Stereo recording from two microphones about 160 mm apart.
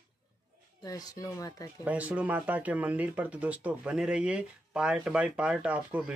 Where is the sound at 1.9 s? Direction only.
10° right (ahead or behind).